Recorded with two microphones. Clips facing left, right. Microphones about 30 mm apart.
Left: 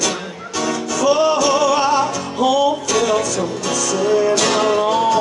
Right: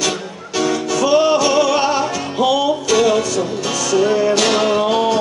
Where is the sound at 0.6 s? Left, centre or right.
Centre.